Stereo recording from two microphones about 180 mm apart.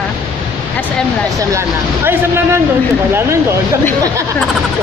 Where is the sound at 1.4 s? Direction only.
15° right (ahead or behind).